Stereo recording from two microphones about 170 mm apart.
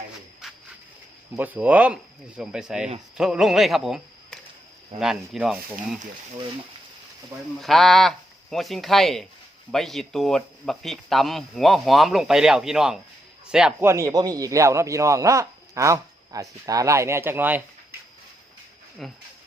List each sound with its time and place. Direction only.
1.4 s speech: 10° right (ahead or behind)
7.6 s speech: centre (ahead or behind)
13.8 s speech: 20° right (ahead or behind)
19.0 s speech: centre (ahead or behind)